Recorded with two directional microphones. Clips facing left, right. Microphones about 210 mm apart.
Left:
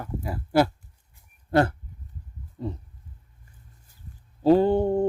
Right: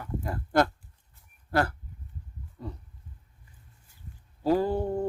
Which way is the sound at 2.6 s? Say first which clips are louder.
Left 7 dB; 25° left (ahead or behind).